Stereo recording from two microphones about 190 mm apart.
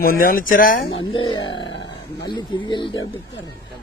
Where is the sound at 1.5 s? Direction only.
75° left (ahead or behind).